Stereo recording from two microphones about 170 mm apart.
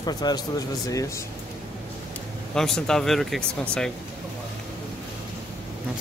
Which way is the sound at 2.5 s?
5° left (ahead or behind).